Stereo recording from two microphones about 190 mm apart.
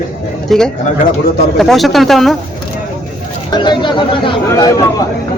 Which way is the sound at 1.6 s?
Centre (ahead or behind).